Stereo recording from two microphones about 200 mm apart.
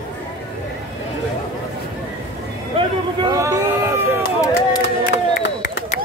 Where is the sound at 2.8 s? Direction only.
25° right (ahead or behind).